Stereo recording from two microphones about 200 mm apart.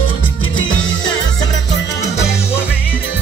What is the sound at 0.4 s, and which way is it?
Music, 80° left.